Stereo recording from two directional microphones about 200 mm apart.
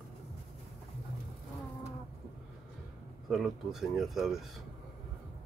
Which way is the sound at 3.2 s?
Centre (ahead or behind).